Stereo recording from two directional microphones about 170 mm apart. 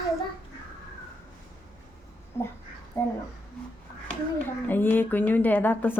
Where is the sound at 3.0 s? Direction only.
15° left (ahead or behind).